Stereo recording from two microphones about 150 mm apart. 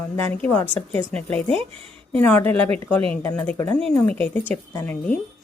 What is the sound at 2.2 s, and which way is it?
Speech, 10° left (ahead or behind).